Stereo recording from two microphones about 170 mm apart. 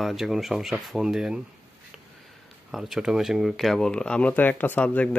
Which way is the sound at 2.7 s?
5° right (ahead or behind).